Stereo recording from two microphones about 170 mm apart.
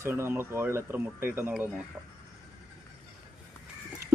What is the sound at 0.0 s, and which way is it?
A man's voice, 15° right (ahead or behind).